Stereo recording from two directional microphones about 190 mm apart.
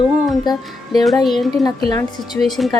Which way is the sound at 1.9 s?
20° left (ahead or behind).